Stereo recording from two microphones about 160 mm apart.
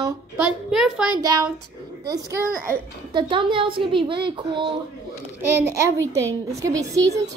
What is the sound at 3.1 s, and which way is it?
A woman's voice, 30° right (ahead or behind).